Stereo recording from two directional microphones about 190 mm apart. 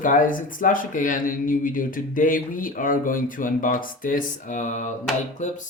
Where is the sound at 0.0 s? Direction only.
45° left (ahead or behind).